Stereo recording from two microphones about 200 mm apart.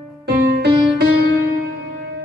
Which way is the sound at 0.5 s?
55° right (ahead or behind).